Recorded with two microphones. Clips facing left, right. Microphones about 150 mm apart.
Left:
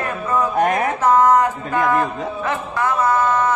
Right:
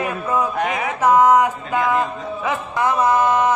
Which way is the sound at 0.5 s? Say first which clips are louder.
Left 4 dB; 45° left (ahead or behind).